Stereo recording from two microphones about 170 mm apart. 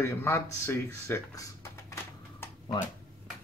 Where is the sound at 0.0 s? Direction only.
15° left (ahead or behind).